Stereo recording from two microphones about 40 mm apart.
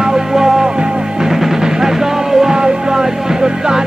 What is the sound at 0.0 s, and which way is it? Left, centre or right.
Music, centre.